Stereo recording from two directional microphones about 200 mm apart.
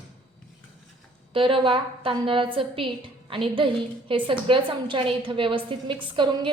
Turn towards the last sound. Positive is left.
turn(degrees=-25)  # may be behind; listen again after turning